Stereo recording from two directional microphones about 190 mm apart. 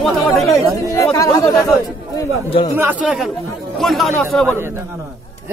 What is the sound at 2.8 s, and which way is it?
Speech, 10° right (ahead or behind).